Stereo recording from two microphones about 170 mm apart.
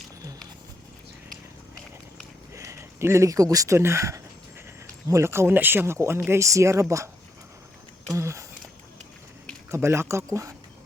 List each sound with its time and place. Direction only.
2.5 s speech: 15° right (ahead or behind)
8.1 s a sound: 15° right (ahead or behind)
9.7 s speech: 15° right (ahead or behind)